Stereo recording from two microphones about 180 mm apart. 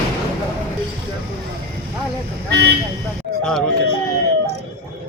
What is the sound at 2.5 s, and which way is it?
Speech, 70° right (ahead or behind).